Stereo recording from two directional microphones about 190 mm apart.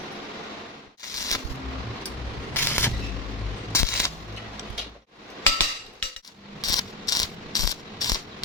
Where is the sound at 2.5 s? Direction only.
10° left (ahead or behind).